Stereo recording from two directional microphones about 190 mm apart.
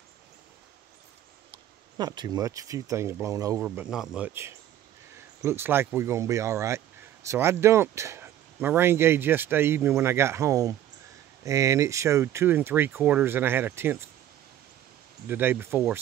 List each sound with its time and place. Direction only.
2.0 s speech: 20° right (ahead or behind)
3.6 s speech: 5° right (ahead or behind)
15.2 s speech: 10° right (ahead or behind)